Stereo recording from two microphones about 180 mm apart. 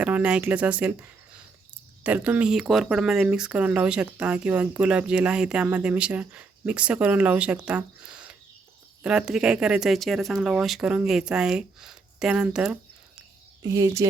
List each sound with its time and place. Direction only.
0.0 s speech: 5° right (ahead or behind)
2.0 s speech: 10° right (ahead or behind)
13.6 s speech: 20° right (ahead or behind)